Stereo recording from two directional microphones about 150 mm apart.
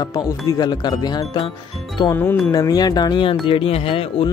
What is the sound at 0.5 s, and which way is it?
Speech, 25° left (ahead or behind).